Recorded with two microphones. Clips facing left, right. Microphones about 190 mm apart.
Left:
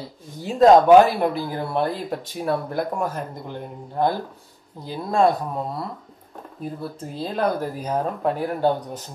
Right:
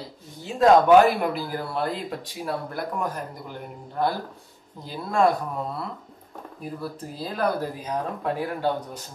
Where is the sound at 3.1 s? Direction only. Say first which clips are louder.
Left 4 dB; 25° left (ahead or behind).